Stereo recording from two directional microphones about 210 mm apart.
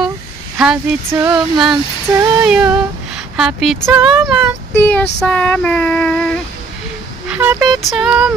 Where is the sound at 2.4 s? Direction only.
5° right (ahead or behind).